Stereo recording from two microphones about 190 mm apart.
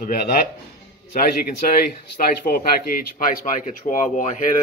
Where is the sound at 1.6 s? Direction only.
50° left (ahead or behind).